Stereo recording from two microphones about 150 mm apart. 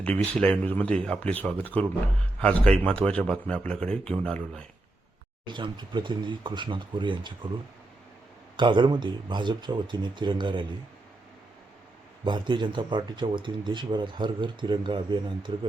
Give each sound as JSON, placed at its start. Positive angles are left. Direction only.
{"t": 0.3, "sound": "a man's voice", "side_deg": 5}
{"t": 5.5, "sound": "speech", "side_deg": -30}
{"t": 8.5, "sound": "speech", "side_deg": -30}
{"t": 12.2, "sound": "speech", "side_deg": -30}